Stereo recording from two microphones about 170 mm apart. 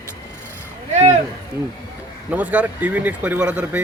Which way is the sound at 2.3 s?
10° right (ahead or behind).